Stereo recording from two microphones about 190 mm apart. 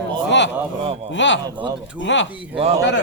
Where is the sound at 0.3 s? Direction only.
70° left (ahead or behind).